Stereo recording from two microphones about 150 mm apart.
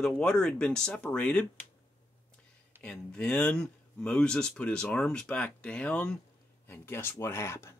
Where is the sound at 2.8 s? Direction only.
5° left (ahead or behind).